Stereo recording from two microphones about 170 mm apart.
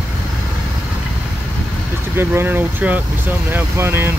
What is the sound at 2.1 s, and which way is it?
Speech, 15° right (ahead or behind).